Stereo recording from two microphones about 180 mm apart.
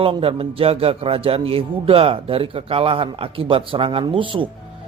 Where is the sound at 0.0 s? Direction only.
30° right (ahead or behind).